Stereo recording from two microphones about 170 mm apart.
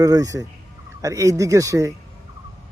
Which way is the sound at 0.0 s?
20° right (ahead or behind).